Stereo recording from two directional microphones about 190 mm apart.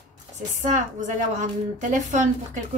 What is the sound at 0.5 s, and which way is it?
Speech, 40° right (ahead or behind).